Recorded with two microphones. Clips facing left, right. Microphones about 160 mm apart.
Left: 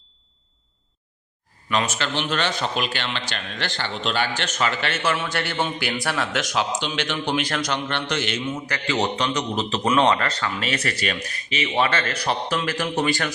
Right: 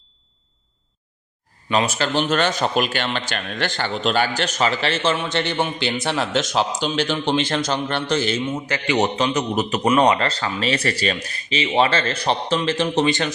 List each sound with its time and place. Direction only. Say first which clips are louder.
1.7 s a man's voice: right 4 dB; 35° right (ahead or behind)
5.1 s a man's voice: right 3 dB; 20° right (ahead or behind)
10.2 s a man's voice: right 3 dB; 30° right (ahead or behind)